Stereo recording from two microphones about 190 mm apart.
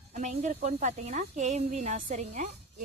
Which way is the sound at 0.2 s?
40° right (ahead or behind).